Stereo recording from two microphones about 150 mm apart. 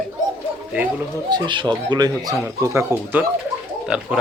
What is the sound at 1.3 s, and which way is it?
Speech, 30° right (ahead or behind).